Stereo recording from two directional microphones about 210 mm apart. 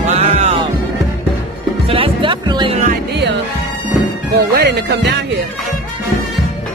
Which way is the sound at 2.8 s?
55° right (ahead or behind).